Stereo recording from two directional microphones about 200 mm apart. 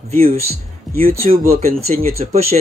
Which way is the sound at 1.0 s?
45° right (ahead or behind).